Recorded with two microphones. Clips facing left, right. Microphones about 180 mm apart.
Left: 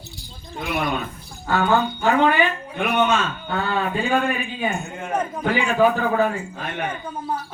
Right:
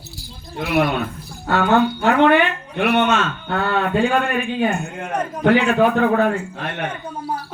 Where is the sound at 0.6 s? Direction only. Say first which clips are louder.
Right 6 dB; 65° right (ahead or behind).